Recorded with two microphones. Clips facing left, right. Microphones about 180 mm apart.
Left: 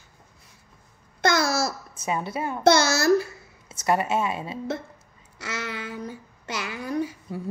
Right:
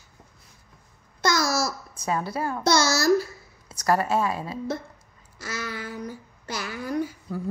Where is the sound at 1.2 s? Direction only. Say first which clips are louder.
Left 2 dB; 60° left (ahead or behind).